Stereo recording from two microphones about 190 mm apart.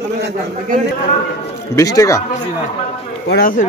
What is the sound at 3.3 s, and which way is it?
Speech, 50° left (ahead or behind).